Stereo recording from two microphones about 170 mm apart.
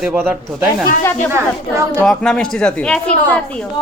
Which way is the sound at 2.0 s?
5° left (ahead or behind).